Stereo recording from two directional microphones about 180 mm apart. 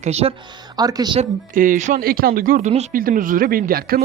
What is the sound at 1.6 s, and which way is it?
Speech, 45° right (ahead or behind).